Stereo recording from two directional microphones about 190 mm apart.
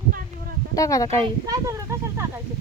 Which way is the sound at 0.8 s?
15° left (ahead or behind).